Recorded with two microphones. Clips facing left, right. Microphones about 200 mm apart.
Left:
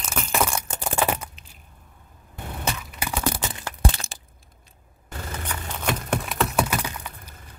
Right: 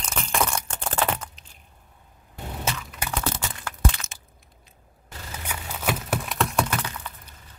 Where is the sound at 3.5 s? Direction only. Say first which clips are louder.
Left 1 dB; 30° left (ahead or behind).